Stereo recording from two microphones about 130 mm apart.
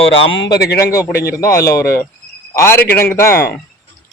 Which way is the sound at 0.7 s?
20° left (ahead or behind).